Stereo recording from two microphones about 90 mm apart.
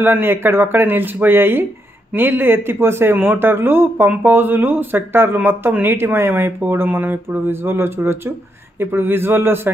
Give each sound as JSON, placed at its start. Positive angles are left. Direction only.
{"t": 0.0, "sound": "speech", "side_deg": -25}